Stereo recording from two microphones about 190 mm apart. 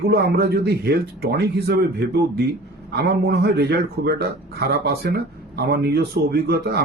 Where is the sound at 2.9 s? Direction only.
60° right (ahead or behind).